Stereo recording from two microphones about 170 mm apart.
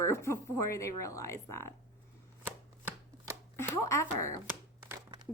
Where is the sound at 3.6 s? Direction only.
15° left (ahead or behind).